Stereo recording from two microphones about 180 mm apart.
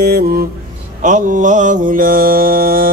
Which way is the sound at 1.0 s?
45° right (ahead or behind).